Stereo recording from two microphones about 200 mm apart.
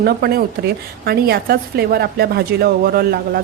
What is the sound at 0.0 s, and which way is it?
A woman's voice, 50° right (ahead or behind).